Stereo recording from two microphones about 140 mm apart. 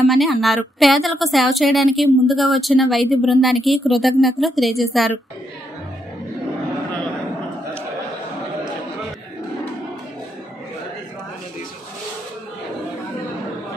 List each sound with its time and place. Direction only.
0.1 s a woman's voice: centre (ahead or behind)